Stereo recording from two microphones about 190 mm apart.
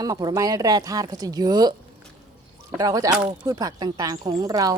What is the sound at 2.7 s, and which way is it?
Speech, 20° right (ahead or behind).